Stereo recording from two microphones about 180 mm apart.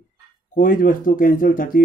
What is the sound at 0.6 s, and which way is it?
Speech, 50° left (ahead or behind).